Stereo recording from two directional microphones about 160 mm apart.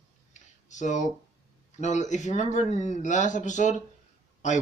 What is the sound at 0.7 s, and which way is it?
Speech, 50° left (ahead or behind).